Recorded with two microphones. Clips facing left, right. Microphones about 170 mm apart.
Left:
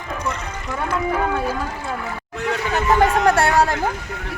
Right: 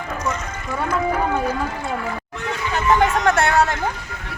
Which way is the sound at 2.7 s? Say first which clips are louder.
Even; 35° left (ahead or behind).